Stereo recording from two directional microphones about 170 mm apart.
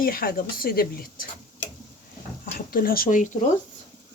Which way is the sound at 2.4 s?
60° left (ahead or behind).